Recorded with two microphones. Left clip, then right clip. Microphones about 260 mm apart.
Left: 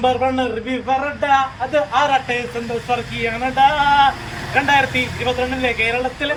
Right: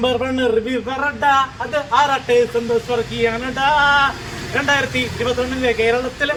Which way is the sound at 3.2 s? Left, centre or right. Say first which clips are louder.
Left 6 dB; centre.